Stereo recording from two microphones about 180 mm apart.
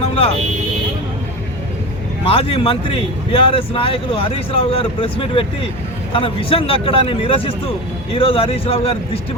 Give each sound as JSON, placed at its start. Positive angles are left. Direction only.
{"t": 0.0, "sound": "vehicle", "side_deg": 30}
{"t": 2.2, "sound": "speech", "side_deg": 30}